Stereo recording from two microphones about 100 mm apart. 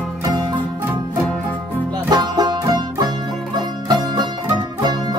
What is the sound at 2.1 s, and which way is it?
Music, 45° right (ahead or behind).